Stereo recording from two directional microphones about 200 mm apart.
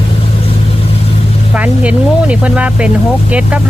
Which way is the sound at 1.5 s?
5° right (ahead or behind).